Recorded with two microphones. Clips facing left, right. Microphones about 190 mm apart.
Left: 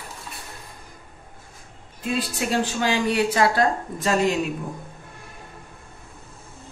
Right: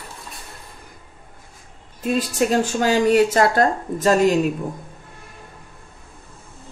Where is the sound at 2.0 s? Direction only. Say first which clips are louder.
Right 6 dB; 45° right (ahead or behind).